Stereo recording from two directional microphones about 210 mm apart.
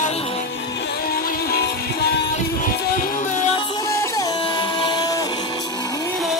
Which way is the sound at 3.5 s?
15° left (ahead or behind).